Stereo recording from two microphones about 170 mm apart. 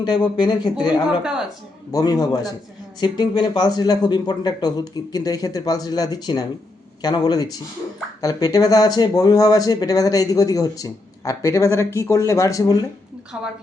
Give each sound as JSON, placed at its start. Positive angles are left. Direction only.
{"t": 0.0, "sound": "speech", "side_deg": 25}
{"t": 1.2, "sound": "a woman's voice", "side_deg": -5}
{"t": 1.9, "sound": "speech", "side_deg": 20}
{"t": 13.3, "sound": "a woman's voice", "side_deg": -10}